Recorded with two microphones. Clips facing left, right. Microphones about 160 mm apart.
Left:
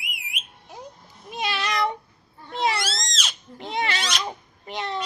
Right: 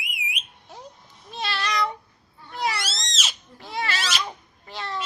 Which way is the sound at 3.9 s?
5° right (ahead or behind).